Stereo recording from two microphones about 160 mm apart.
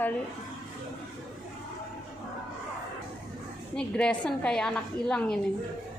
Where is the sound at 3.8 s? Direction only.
5° left (ahead or behind).